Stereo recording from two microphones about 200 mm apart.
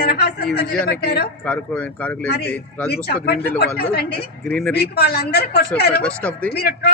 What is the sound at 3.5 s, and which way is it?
Speech, 55° left (ahead or behind).